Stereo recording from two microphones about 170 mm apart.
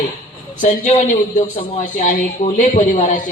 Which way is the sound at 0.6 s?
55° left (ahead or behind).